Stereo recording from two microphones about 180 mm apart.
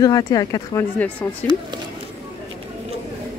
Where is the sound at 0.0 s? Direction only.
20° left (ahead or behind).